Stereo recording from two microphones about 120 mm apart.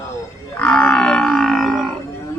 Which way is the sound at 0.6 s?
5° left (ahead or behind).